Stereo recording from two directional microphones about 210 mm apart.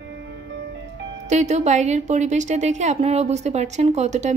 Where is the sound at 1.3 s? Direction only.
35° right (ahead or behind).